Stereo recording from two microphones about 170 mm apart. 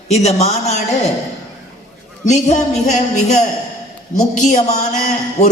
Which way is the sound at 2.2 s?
45° left (ahead or behind).